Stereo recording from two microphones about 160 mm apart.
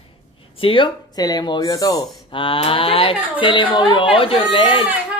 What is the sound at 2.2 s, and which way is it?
Speech, 35° left (ahead or behind).